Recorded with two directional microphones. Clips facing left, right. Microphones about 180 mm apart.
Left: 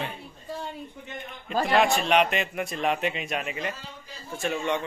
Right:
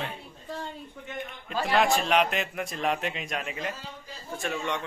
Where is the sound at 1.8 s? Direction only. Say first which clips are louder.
Left 1 dB; centre (ahead or behind).